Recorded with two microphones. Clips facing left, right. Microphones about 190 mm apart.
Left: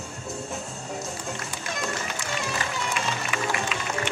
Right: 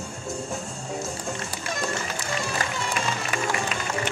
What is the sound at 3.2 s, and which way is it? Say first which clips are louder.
Music: right 1 dB; 40° right (ahead or behind).